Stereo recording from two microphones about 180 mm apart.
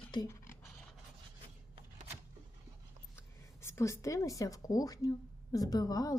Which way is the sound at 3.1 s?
15° left (ahead or behind).